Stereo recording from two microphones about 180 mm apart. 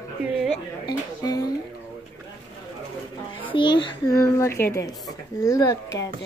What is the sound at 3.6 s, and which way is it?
Speech, 25° left (ahead or behind).